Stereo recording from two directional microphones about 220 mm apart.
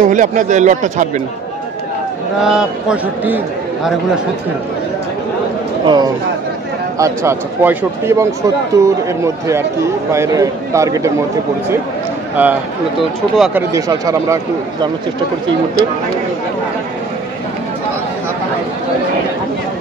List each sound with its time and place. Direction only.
0.0 s speech: 35° right (ahead or behind)
2.4 s a man's voice: 5° right (ahead or behind)
5.9 s speech: 20° right (ahead or behind)
12.4 s speech: 5° right (ahead or behind)